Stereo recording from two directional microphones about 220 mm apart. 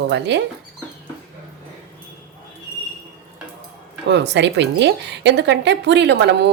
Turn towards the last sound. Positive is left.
turn(degrees=-50)  # may be behind; listen again after turning